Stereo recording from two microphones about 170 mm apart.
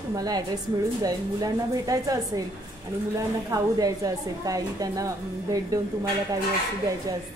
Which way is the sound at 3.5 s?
20° right (ahead or behind).